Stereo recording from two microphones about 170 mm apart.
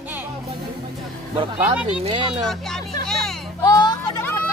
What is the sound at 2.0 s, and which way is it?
Speech, 35° right (ahead or behind).